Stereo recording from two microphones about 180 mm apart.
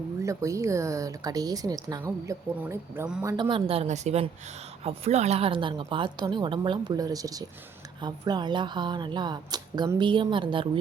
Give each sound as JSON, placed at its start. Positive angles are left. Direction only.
{"t": 0.2, "sound": "speech", "side_deg": -15}
{"t": 3.2, "sound": "a woman's voice", "side_deg": -20}